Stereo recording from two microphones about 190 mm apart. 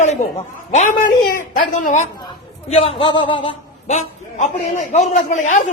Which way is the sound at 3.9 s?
40° left (ahead or behind).